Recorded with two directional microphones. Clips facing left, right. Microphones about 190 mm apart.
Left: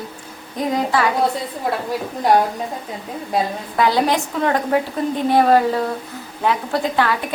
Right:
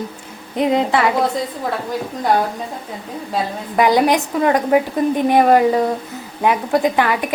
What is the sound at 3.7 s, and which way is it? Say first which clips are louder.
A woman's voice: right 4 dB; 15° right (ahead or behind).